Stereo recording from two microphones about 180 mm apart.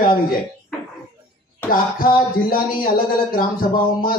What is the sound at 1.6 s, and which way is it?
Speech, 50° left (ahead or behind).